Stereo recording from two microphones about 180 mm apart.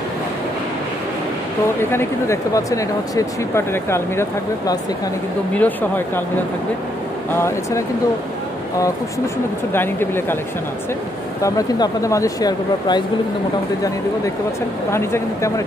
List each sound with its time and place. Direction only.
1.8 s speech: 15° left (ahead or behind)
7.3 s speech: 15° left (ahead or behind)
9.7 s speech: 10° left (ahead or behind)
11.4 s speech: 20° left (ahead or behind)
14.9 s speech: 15° left (ahead or behind)